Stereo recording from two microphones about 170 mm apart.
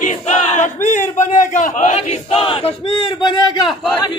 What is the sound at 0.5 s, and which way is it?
Speech, 45° left (ahead or behind).